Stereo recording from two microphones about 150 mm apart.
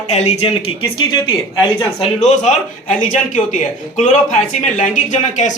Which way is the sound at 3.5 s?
55° left (ahead or behind).